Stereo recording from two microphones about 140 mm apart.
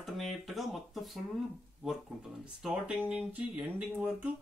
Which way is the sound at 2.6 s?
5° right (ahead or behind).